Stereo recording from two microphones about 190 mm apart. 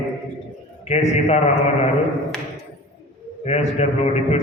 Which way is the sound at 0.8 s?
35° left (ahead or behind).